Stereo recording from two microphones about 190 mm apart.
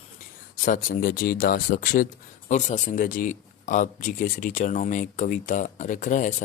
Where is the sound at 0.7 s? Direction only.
40° left (ahead or behind).